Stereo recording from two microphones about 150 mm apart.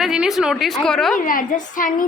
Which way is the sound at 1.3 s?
65° left (ahead or behind).